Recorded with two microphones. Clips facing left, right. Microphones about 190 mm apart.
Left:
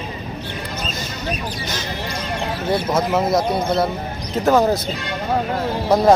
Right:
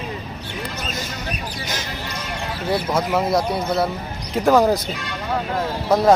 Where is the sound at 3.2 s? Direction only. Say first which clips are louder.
Left 1 dB; 20° left (ahead or behind).